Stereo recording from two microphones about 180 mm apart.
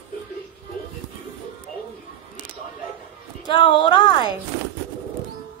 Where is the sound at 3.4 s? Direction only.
25° left (ahead or behind).